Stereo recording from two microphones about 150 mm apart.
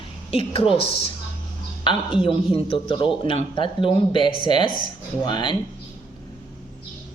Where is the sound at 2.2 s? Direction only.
35° left (ahead or behind).